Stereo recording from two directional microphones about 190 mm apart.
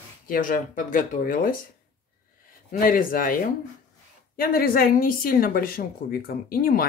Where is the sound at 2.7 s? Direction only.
50° left (ahead or behind).